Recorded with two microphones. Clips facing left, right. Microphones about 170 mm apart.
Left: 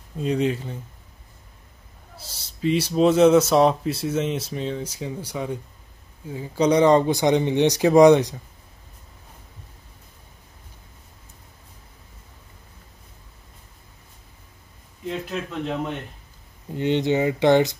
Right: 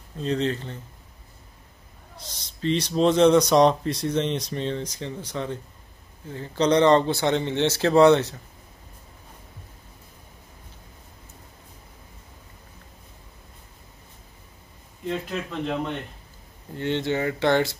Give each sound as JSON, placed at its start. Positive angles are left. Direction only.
{"t": 0.2, "sound": "speech", "side_deg": 10}
{"t": 2.1, "sound": "speech", "side_deg": 5}
{"t": 15.0, "sound": "speech", "side_deg": 0}
{"t": 16.7, "sound": "speech", "side_deg": 15}